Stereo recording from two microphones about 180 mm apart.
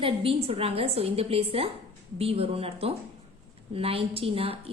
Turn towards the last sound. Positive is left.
turn(degrees=-35)  # may be behind; listen again after turning